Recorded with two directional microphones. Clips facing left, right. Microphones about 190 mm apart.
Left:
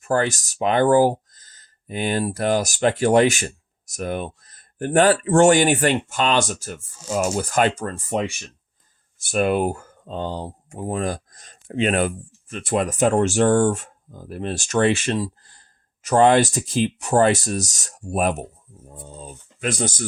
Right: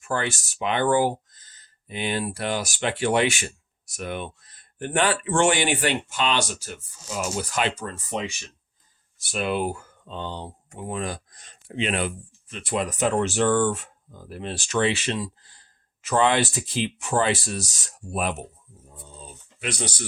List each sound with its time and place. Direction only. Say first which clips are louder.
0.0 s speech: left 6 dB; 40° left (ahead or behind)